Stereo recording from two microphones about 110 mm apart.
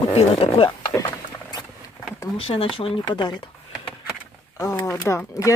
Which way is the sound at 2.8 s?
50° left (ahead or behind).